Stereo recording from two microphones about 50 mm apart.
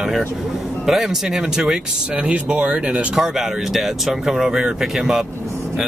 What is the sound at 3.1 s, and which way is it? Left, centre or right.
Speech, centre.